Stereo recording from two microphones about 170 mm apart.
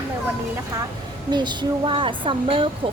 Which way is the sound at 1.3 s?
25° right (ahead or behind).